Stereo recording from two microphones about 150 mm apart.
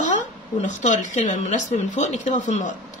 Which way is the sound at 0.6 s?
50° left (ahead or behind).